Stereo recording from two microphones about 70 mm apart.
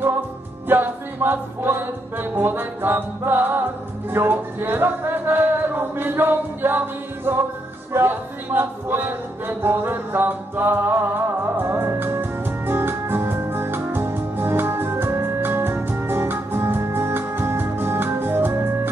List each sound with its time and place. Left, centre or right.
0.7 s music: right
4.1 s a man's voice: right
7.9 s music: right